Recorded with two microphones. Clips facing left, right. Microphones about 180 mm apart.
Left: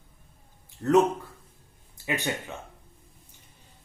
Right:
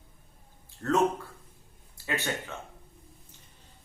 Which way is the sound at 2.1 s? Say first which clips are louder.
Left 3 dB; 15° left (ahead or behind).